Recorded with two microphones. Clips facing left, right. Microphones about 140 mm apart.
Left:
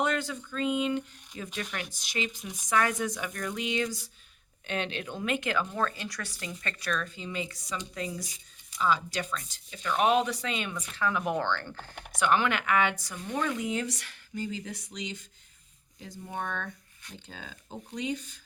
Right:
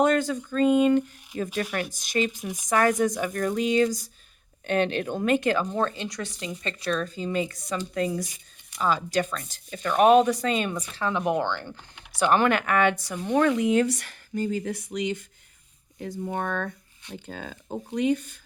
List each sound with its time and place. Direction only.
0.0 s speech: 45° right (ahead or behind)
7.3 s speech: 50° right (ahead or behind); by 11.2 s 30° right (ahead or behind)
11.2 s speech: 15° right (ahead or behind)
12.2 s speech: 45° right (ahead or behind)